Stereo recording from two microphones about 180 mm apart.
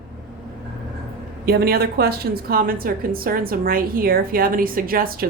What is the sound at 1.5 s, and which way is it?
A woman's voice, 60° right (ahead or behind).